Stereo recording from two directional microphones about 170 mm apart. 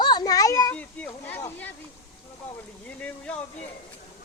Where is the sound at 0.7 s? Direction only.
10° left (ahead or behind).